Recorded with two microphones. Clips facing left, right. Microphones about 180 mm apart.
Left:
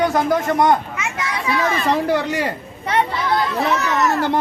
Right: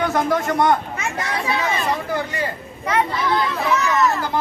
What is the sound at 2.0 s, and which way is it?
Speech, 80° left.